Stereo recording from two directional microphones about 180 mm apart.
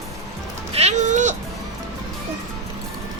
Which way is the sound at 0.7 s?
35° right (ahead or behind).